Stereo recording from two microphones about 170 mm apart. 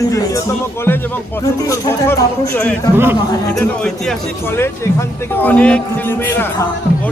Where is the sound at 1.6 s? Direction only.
20° left (ahead or behind).